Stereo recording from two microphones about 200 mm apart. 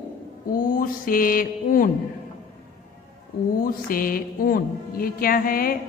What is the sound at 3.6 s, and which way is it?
Mantra, 45° left (ahead or behind).